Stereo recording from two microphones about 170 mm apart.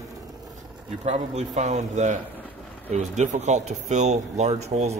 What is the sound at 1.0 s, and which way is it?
Speech, 40° right (ahead or behind).